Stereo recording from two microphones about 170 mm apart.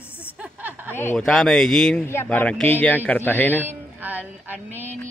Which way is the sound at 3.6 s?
10° right (ahead or behind).